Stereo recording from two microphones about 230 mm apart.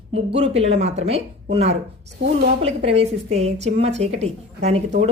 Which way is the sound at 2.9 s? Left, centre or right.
Right.